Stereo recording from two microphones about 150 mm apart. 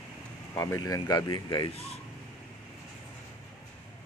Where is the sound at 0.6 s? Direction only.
20° left (ahead or behind).